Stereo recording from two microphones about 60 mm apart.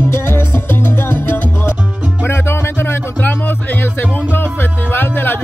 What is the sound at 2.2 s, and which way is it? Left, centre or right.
Music, left.